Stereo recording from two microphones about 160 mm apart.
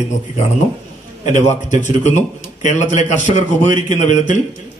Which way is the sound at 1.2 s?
50° left (ahead or behind).